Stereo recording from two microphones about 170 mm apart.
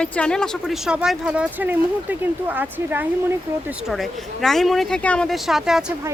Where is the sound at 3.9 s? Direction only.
Centre (ahead or behind).